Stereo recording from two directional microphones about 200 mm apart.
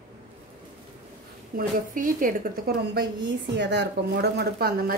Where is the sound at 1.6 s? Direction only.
45° right (ahead or behind).